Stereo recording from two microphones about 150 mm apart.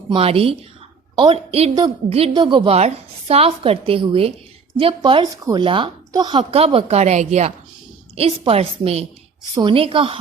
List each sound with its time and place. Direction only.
0.1 s a woman's voice: 40° right (ahead or behind)